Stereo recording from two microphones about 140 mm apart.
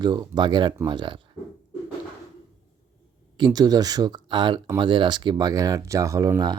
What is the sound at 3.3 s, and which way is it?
Speech, 30° right (ahead or behind).